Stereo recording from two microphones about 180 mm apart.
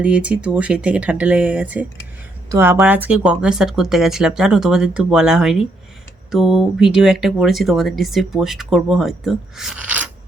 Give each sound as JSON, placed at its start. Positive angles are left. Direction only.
{"t": 0.0, "sound": "speech", "side_deg": -5}